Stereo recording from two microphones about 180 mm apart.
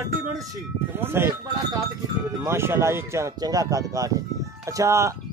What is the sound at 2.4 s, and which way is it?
Speech, 15° right (ahead or behind).